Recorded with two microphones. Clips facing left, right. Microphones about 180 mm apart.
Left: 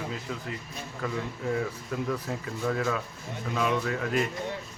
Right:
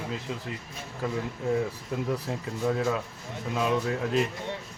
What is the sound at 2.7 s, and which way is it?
Speech, 20° right (ahead or behind).